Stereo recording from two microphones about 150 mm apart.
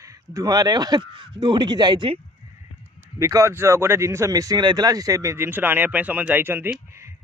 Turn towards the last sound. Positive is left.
turn(degrees=-15)  # may be behind; listen again after turning